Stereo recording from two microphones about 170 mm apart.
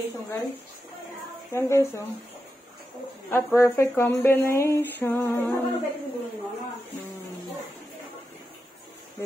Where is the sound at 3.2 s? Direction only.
15° left (ahead or behind).